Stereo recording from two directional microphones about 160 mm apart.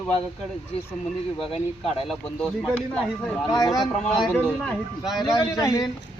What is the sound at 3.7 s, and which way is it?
Speech, centre (ahead or behind).